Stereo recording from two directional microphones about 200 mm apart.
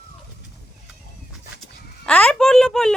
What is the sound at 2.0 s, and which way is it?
Speech, 5° left (ahead or behind).